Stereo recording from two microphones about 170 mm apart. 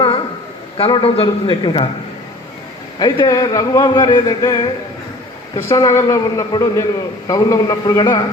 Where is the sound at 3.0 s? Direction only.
25° left (ahead or behind).